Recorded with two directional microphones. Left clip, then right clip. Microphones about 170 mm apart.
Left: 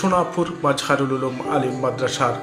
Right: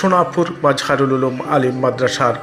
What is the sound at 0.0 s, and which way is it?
A man's voice, 20° right (ahead or behind).